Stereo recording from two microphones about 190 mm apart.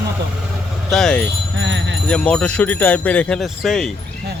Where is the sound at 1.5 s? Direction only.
75° right (ahead or behind).